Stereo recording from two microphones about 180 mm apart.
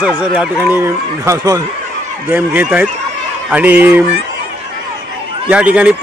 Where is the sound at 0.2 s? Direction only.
5° right (ahead or behind).